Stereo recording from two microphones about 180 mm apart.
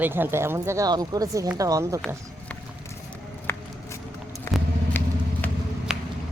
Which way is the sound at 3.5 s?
10° left (ahead or behind).